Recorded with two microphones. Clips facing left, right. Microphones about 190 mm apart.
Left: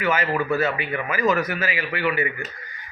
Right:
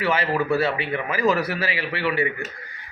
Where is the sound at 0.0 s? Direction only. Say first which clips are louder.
Even; 30° right (ahead or behind).